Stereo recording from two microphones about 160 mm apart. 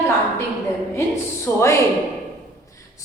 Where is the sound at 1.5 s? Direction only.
20° left (ahead or behind).